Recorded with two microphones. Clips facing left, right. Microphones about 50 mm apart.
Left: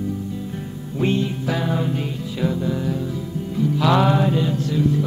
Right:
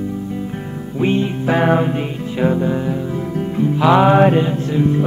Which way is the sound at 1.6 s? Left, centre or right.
Right.